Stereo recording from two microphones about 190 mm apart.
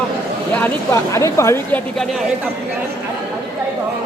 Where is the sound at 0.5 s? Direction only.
10° left (ahead or behind).